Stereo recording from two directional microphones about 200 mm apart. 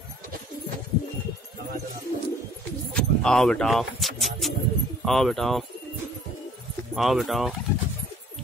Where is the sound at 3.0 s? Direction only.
5° left (ahead or behind).